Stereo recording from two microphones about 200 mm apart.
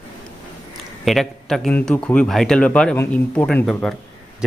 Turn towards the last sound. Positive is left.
turn(degrees=5)  # may be behind; listen again after turning